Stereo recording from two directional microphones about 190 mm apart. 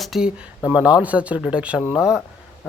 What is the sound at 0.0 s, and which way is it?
Speech, centre (ahead or behind).